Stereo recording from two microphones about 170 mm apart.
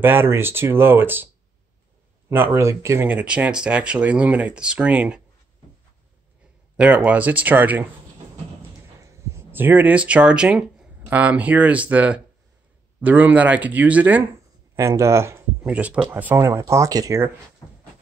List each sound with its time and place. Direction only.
0.0 s speech: 15° right (ahead or behind)
6.8 s speech: 10° right (ahead or behind)
9.0 s speech: 15° right (ahead or behind)